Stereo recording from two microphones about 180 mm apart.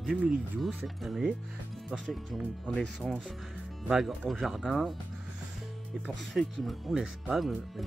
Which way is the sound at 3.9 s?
Centre (ahead or behind).